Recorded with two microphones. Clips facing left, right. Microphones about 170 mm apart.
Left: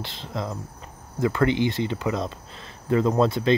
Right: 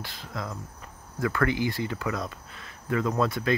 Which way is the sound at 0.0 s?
25° left (ahead or behind).